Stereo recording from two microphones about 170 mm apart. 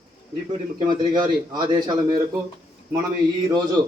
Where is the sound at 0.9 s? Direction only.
25° right (ahead or behind).